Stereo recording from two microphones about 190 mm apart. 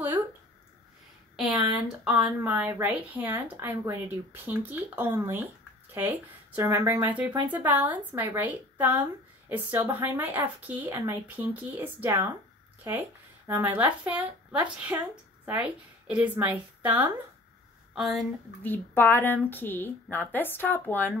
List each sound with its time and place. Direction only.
1.3 s a sound: centre (ahead or behind)
2.0 s a woman's voice: 5° right (ahead or behind)
13.5 s a woman's voice: 10° right (ahead or behind)
18.6 s speech: 10° left (ahead or behind)